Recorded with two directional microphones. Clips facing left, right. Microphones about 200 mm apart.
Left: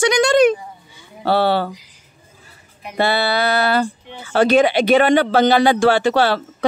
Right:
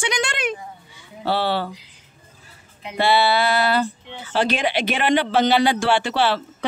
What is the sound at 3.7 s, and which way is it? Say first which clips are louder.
Speech: left 3 dB; 50° left (ahead or behind).